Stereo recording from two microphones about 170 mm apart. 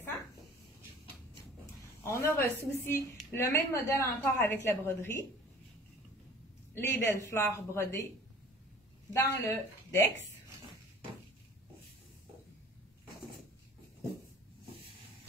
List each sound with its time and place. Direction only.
2.0 s a woman's voice: 15° left (ahead or behind)
6.7 s a woman's voice: 15° left (ahead or behind)
9.1 s a woman's voice: 15° left (ahead or behind)